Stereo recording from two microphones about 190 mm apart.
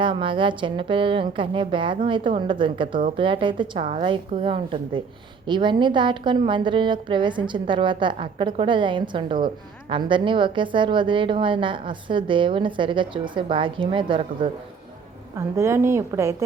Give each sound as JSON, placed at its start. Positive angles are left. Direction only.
{"t": 0.0, "sound": "a woman's voice", "side_deg": -25}
{"t": 15.4, "sound": "a woman's voice", "side_deg": -15}